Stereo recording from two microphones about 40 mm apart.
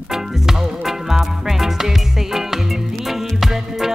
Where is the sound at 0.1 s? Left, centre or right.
Centre.